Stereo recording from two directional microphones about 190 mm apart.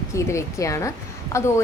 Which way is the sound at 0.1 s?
15° left (ahead or behind).